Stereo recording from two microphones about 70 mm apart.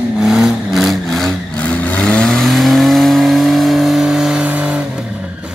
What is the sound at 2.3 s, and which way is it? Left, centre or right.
Vehicle, centre.